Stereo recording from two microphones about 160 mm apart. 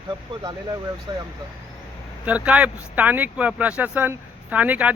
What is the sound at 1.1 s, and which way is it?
Speech, 30° right (ahead or behind).